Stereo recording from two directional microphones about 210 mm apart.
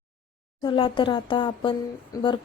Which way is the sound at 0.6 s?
25° left (ahead or behind).